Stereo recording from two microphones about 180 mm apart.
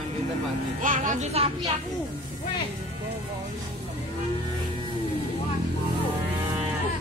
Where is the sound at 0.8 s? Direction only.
45° right (ahead or behind).